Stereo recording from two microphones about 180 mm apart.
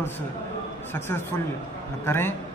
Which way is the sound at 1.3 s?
20° left (ahead or behind).